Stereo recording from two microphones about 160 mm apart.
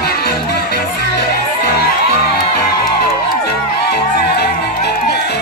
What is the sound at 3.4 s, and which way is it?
Music, 90° left.